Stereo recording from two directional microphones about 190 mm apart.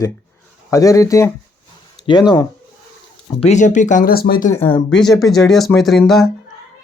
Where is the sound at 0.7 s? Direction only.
15° left (ahead or behind).